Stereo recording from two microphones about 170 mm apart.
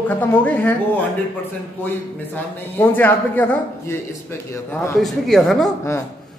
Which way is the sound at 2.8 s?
10° left (ahead or behind).